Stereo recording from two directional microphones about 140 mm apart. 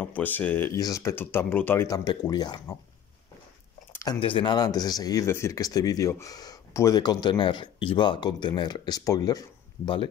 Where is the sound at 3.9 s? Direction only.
25° left (ahead or behind).